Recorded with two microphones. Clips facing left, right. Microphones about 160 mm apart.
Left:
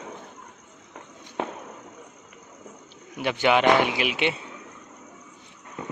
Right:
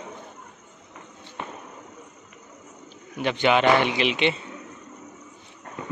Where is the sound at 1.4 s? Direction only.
90° left.